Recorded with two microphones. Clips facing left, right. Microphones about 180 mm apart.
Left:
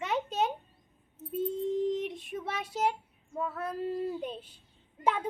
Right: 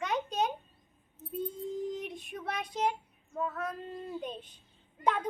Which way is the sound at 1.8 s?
25° left (ahead or behind).